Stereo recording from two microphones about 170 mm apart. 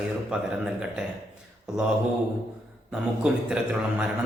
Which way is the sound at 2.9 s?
5° right (ahead or behind).